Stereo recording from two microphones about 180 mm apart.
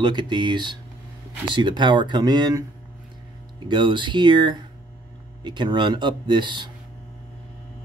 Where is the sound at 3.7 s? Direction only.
25° right (ahead or behind).